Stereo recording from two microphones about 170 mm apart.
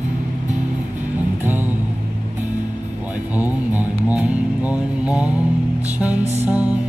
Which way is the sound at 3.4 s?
10° right (ahead or behind).